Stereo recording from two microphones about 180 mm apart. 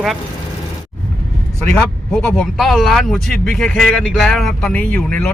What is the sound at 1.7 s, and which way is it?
Speech, 5° left (ahead or behind).